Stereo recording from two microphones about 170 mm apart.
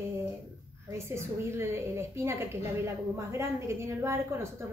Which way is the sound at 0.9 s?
15° right (ahead or behind).